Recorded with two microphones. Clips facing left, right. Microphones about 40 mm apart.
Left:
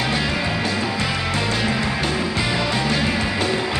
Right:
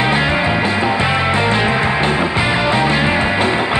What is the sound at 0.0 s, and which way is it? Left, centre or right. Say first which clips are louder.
Music: right 7 dB; right.